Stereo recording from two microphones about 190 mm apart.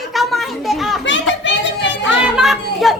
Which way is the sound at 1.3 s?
75° left (ahead or behind).